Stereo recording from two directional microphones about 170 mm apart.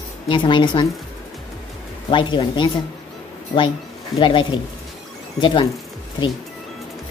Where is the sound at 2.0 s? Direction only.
30° left (ahead or behind).